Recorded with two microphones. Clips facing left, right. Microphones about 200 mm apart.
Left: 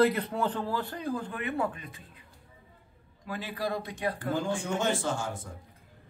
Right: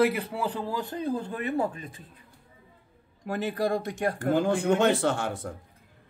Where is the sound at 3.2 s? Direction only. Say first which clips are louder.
Right 6 dB; 50° right (ahead or behind); by 5.5 s 65° right (ahead or behind).